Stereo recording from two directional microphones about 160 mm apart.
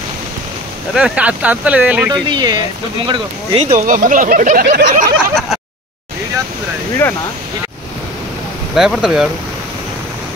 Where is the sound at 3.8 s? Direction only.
55° right (ahead or behind).